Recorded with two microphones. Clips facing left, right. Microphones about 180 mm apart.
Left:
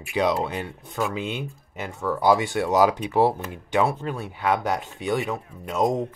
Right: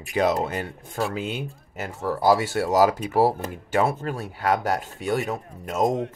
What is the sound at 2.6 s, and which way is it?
Speech, 45° right (ahead or behind).